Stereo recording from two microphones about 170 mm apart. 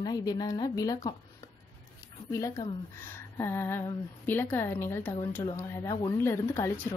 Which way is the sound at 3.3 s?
15° left (ahead or behind).